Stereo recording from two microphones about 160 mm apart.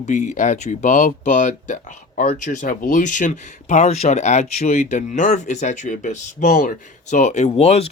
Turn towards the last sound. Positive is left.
turn(degrees=40)  # may be behind; listen again after turning